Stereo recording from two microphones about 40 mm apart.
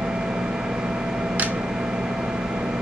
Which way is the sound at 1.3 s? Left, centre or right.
Right.